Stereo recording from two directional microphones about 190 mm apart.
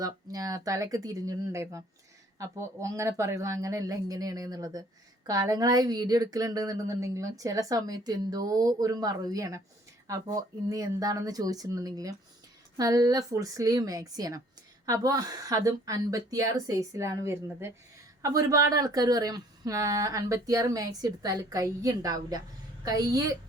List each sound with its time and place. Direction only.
0.0 s a woman's voice: 20° right (ahead or behind)